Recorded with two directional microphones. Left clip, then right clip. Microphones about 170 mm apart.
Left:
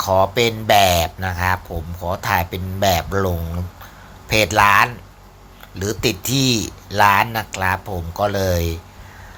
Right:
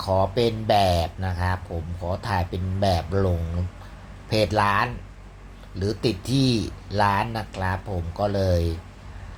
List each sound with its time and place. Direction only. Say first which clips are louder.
0.0 s mantra: left 7 dB; 40° left (ahead or behind)
0.3 s speech: left 6 dB; 10° left (ahead or behind)
4.3 s speech: left 7 dB; 10° left (ahead or behind)